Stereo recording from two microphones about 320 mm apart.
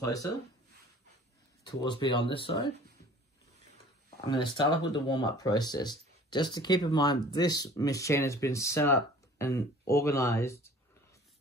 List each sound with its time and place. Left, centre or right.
0.0 s speech: centre
1.7 s speech: centre
4.3 s speech: centre